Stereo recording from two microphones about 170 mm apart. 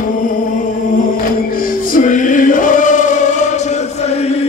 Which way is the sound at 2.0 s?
50° left (ahead or behind).